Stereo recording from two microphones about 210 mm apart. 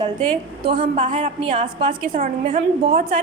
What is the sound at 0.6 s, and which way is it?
Speech, 25° right (ahead or behind).